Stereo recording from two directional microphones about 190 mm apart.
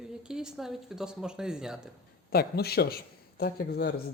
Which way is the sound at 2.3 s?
55° left (ahead or behind).